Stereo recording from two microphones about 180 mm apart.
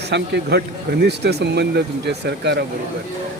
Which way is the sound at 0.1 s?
65° right (ahead or behind).